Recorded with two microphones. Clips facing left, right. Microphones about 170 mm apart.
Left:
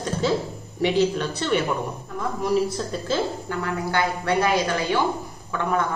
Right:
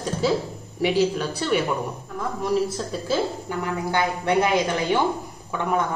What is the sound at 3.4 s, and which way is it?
A woman's voice, 15° right (ahead or behind).